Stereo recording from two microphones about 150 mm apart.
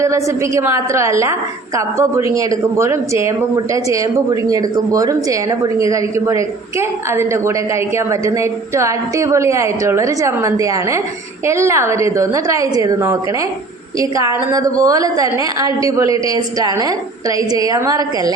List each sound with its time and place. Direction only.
0.0 s speech: 20° right (ahead or behind)